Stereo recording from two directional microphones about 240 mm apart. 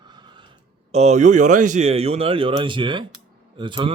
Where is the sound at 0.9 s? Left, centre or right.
Right.